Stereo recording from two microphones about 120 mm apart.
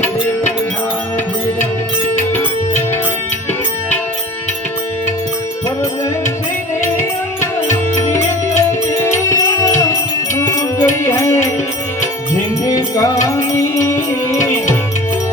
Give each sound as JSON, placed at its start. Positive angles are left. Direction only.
{"t": 0.0, "sound": "music", "side_deg": 20}
{"t": 2.3, "sound": "music", "side_deg": 20}
{"t": 8.5, "sound": "music", "side_deg": 25}
{"t": 12.6, "sound": "music", "side_deg": 30}